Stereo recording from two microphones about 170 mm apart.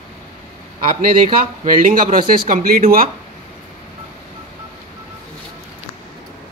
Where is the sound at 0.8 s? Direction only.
50° right (ahead or behind).